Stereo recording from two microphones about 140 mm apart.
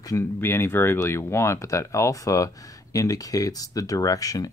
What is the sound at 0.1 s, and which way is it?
Speech, 20° left (ahead or behind).